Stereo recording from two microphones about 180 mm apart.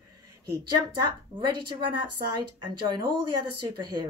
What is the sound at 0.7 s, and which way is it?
A woman's voice, 25° right (ahead or behind).